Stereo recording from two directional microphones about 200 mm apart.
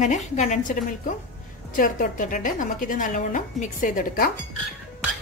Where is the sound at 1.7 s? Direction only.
45° left (ahead or behind).